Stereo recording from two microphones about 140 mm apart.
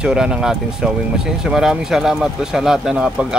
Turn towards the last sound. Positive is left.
turn(degrees=-5)  # may be behind; listen again after turning